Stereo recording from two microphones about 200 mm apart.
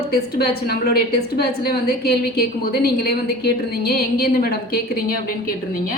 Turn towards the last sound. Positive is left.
turn(degrees=45)  # may be behind; listen again after turning